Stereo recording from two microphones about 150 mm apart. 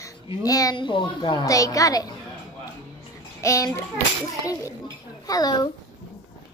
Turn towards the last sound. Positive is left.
turn(degrees=25)  # may be behind; listen again after turning